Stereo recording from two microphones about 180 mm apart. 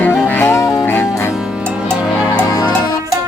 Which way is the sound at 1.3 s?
10° right (ahead or behind).